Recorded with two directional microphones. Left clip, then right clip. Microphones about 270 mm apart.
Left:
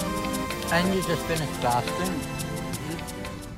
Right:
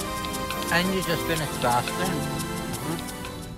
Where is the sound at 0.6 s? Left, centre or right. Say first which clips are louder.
Right 1 dB; centre.